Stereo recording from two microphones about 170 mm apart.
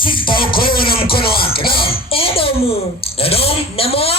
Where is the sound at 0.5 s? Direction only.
60° left (ahead or behind).